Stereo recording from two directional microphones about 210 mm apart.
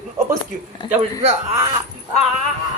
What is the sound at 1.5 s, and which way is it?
Speech, 15° right (ahead or behind).